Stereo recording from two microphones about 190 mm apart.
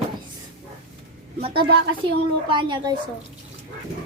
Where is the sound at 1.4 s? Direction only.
30° right (ahead or behind).